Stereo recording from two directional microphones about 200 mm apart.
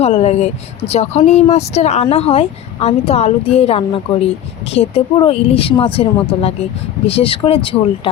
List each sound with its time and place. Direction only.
0.0 s speech: 30° left (ahead or behind)
7.1 s speech: 30° left (ahead or behind)